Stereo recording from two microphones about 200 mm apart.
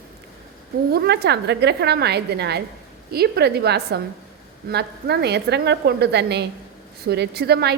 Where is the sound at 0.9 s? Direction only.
55° right (ahead or behind).